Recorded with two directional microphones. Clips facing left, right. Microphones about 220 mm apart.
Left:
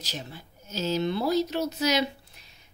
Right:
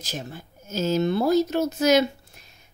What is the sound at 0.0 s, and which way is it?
Speech, 45° right (ahead or behind).